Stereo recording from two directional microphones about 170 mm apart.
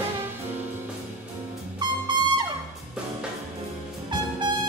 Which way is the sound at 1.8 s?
25° right (ahead or behind).